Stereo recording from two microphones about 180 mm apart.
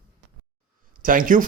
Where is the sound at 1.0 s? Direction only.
50° right (ahead or behind).